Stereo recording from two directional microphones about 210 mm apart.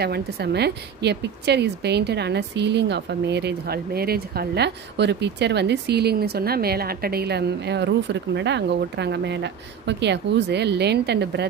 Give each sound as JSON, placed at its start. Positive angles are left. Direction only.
{"t": 0.0, "sound": "a woman's voice", "side_deg": -50}